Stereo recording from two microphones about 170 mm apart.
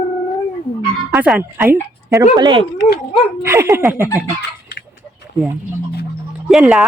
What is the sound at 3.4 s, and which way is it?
Speech, 15° right (ahead or behind).